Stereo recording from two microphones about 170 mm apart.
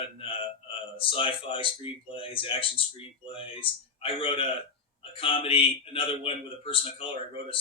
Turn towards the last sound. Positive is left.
turn(degrees=30)  # may be behind; listen again after turning